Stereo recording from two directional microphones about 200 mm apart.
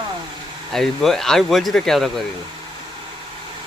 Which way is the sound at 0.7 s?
Centre (ahead or behind).